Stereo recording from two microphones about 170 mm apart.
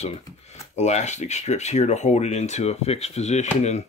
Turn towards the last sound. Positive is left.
turn(degrees=40)  # may be behind; listen again after turning